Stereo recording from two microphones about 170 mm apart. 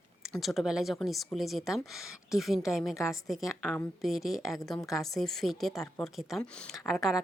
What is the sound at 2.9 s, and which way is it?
Speech, 20° left (ahead or behind).